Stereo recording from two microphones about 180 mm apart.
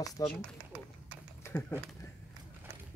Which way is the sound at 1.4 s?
15° left (ahead or behind).